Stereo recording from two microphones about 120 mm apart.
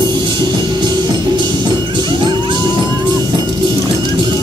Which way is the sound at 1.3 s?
35° right (ahead or behind).